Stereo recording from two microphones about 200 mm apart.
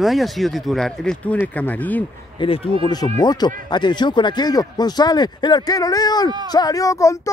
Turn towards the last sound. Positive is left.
turn(degrees=15)  # may be behind; listen again after turning